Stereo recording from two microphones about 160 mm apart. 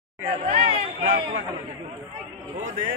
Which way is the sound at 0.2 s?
40° right (ahead or behind).